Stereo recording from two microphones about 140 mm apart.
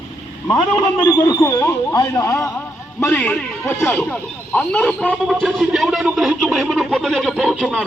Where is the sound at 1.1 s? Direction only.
25° left (ahead or behind).